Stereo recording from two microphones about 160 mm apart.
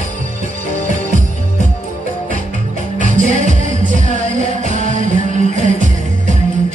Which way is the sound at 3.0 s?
50° right (ahead or behind).